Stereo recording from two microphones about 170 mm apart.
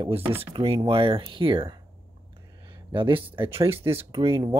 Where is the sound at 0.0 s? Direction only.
35° right (ahead or behind).